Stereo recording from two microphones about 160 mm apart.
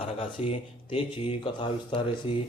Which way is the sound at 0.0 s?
35° left (ahead or behind).